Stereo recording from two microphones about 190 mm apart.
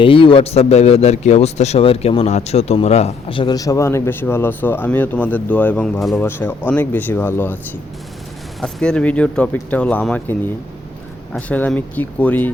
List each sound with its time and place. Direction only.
0.0 s a man's voice: 25° left (ahead or behind); by 7.6 s 10° left (ahead or behind)
8.6 s speech: 5° left (ahead or behind)
11.3 s speech: 10° left (ahead or behind)